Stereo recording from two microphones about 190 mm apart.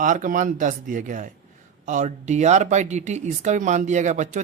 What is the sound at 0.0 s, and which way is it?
Speech, 45° right (ahead or behind).